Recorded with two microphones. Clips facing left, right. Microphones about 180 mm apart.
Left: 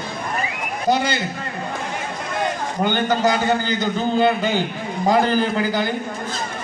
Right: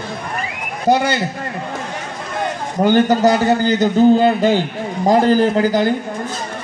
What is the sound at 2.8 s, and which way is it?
A man's voice, 40° right (ahead or behind).